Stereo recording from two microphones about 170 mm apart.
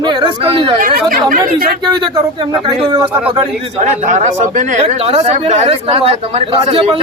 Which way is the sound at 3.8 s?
45° right (ahead or behind).